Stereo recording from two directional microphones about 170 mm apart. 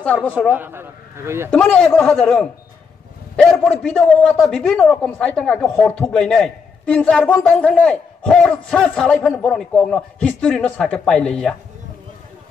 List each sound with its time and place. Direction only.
0.0 s a woman's voice: 10° left (ahead or behind)
0.6 s a man's voice: 15° right (ahead or behind)
1.5 s a man's voice: 5° left (ahead or behind)